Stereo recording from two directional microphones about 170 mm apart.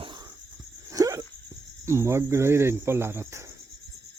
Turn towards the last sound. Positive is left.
turn(degrees=-15)  # may be behind; listen again after turning